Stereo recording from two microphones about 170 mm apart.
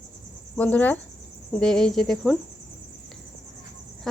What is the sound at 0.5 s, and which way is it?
Speech, 10° left (ahead or behind).